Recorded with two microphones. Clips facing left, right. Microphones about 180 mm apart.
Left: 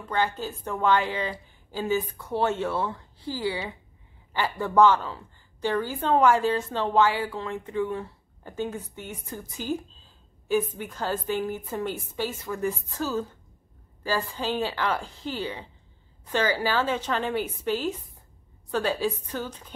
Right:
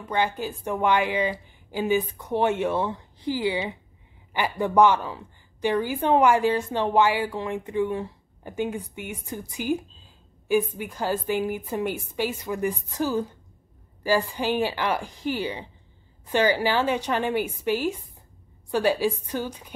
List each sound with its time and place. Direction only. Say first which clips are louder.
0.0 s a woman's voice: right 2 dB; 15° right (ahead or behind)